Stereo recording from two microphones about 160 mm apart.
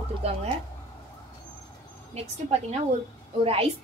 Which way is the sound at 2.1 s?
40° right (ahead or behind).